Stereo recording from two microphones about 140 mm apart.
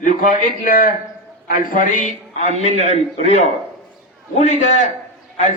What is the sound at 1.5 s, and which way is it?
A man's voice, 75° left (ahead or behind).